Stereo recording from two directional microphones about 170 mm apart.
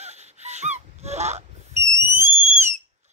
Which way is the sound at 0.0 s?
40° right (ahead or behind).